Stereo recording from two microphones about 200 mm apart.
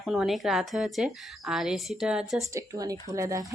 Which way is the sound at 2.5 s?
15° right (ahead or behind).